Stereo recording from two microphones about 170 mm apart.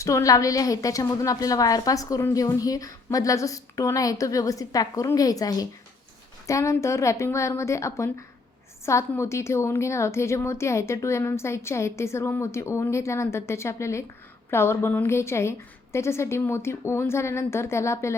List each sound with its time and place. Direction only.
0.0 s a woman's voice: 20° left (ahead or behind)